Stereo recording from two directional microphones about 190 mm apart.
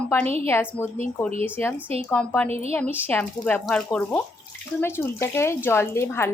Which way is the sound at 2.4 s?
35° right (ahead or behind).